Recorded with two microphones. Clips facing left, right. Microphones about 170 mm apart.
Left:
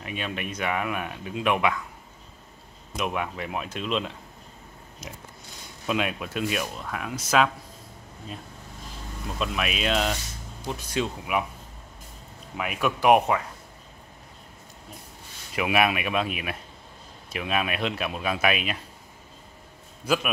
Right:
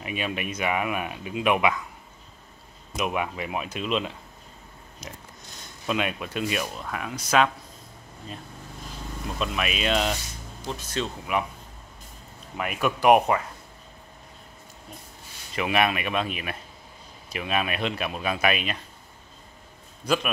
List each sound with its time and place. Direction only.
0.0 s speech: 5° right (ahead or behind)
3.0 s speech: 5° right (ahead or behind)
5.9 s speech: centre (ahead or behind)
9.4 s speech: centre (ahead or behind)
10.7 s speech: 10° left (ahead or behind)
12.5 s speech: centre (ahead or behind)
15.5 s speech: 5° left (ahead or behind)
20.1 s speech: 5° left (ahead or behind)